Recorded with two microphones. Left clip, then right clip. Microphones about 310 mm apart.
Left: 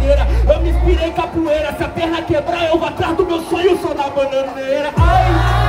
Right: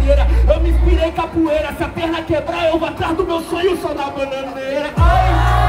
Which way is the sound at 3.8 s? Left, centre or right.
Centre.